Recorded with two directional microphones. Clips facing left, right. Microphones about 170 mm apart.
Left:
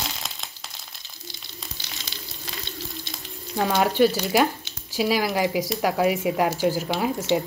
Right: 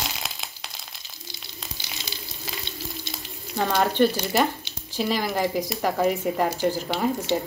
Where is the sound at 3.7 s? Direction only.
10° left (ahead or behind).